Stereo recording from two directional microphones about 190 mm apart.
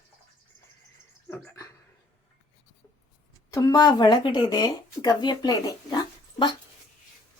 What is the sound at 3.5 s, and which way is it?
Speech, 20° left (ahead or behind).